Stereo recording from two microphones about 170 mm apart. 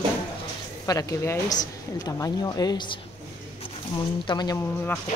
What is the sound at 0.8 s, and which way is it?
Speech, 20° left (ahead or behind).